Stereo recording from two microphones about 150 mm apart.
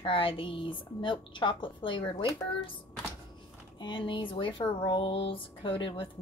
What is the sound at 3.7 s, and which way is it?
A woman's voice, 35° left (ahead or behind).